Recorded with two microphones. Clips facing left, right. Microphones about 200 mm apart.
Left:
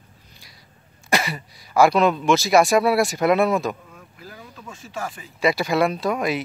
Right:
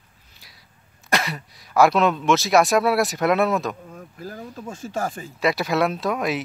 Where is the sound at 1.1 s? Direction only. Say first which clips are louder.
Left 1 dB; centre (ahead or behind).